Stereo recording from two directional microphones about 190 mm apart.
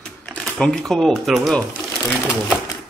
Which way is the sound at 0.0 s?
5° left (ahead or behind).